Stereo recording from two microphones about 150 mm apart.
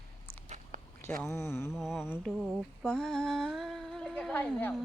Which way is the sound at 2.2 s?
Centre (ahead or behind).